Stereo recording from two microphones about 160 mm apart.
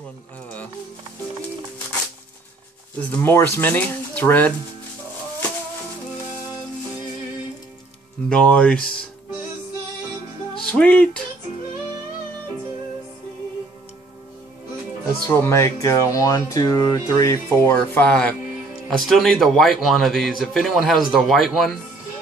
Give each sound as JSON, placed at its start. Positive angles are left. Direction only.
{"t": 3.1, "sound": "speech", "side_deg": 10}
{"t": 8.3, "sound": "speech", "side_deg": 5}
{"t": 10.6, "sound": "music", "side_deg": 10}
{"t": 15.2, "sound": "speech", "side_deg": 15}